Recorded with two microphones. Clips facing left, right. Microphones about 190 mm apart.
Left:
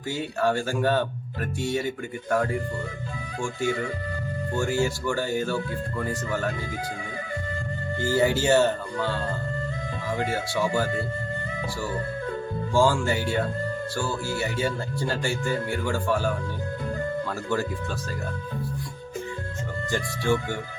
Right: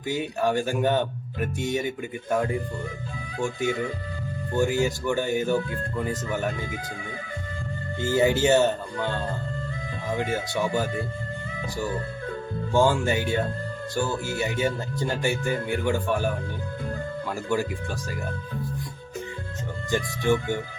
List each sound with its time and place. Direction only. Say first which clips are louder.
0.1 s speech: even; 15° right (ahead or behind)
8.0 s speech: right 1 dB; 20° right (ahead or behind)
12.7 s speech: right 1 dB; 20° right (ahead or behind)
19.9 s speech: right 2 dB; 20° right (ahead or behind)